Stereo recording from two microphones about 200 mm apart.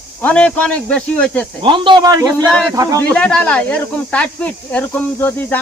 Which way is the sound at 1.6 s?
25° right (ahead or behind).